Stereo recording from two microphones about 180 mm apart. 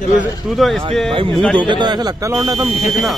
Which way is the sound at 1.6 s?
25° right (ahead or behind).